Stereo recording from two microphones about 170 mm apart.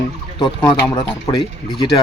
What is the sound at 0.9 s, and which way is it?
Speech, 25° left (ahead or behind).